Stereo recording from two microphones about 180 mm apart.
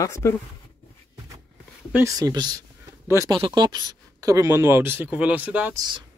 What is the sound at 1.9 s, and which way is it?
Speech, 20° right (ahead or behind).